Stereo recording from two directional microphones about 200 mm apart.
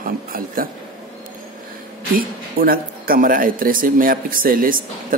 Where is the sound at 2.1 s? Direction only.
45° right (ahead or behind).